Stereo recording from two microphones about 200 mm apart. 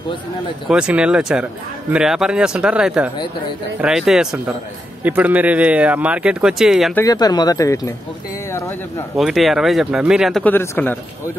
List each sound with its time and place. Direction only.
0.7 s speech: 5° right (ahead or behind)
7.0 s speech: 20° left (ahead or behind)
9.1 s speech: centre (ahead or behind)
10.4 s speech: 10° left (ahead or behind)